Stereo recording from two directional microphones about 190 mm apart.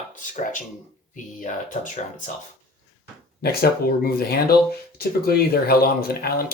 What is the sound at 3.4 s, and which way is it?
Speech, 55° left (ahead or behind).